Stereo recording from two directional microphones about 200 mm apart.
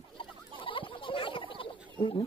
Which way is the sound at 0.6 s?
25° left (ahead or behind).